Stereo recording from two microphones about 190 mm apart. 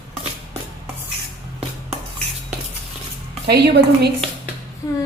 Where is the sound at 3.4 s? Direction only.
60° right (ahead or behind).